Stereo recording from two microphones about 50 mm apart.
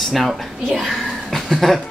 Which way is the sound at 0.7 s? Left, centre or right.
Centre.